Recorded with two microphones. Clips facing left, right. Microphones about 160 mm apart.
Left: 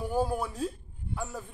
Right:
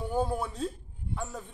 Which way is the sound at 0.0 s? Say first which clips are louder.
Left 1 dB; centre (ahead or behind).